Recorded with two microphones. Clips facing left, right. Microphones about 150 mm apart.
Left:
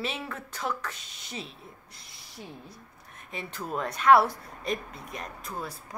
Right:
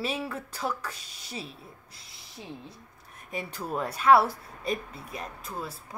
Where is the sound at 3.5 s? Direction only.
5° right (ahead or behind).